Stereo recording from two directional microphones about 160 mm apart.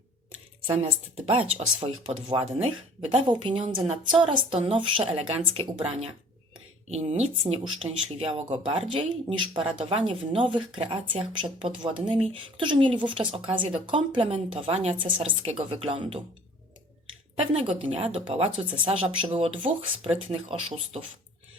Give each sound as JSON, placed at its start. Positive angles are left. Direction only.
{"t": 1.1, "sound": "speech", "side_deg": -40}
{"t": 8.9, "sound": "speech", "side_deg": -30}
{"t": 17.3, "sound": "speech", "side_deg": -35}